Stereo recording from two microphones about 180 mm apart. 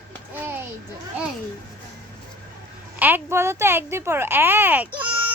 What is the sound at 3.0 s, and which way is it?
Speech, 10° right (ahead or behind).